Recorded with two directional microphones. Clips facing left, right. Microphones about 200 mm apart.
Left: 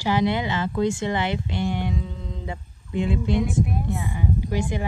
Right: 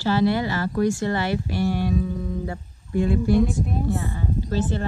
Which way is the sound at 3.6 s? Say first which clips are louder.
Right 2 dB; 15° left (ahead or behind).